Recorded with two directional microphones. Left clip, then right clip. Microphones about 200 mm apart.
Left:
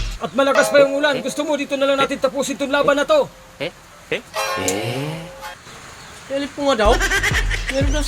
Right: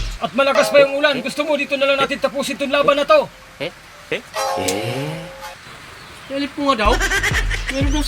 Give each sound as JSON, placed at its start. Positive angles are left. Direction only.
{"t": 0.2, "sound": "speech", "side_deg": 15}
{"t": 3.6, "sound": "speech", "side_deg": 0}
{"t": 6.7, "sound": "speech", "side_deg": 15}
{"t": 6.9, "sound": "goat", "side_deg": 0}